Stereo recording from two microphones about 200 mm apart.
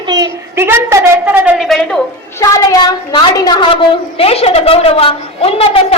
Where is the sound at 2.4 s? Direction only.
15° left (ahead or behind).